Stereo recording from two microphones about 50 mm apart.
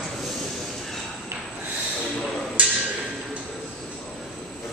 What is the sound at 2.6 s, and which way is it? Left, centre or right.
Wood block, right.